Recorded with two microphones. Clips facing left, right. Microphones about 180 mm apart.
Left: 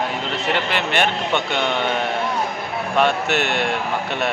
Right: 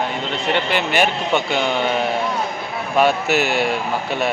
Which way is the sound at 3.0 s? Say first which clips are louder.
Right 3 dB; 5° right (ahead or behind).